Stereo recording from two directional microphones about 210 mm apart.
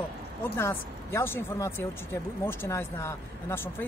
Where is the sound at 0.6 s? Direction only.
10° left (ahead or behind).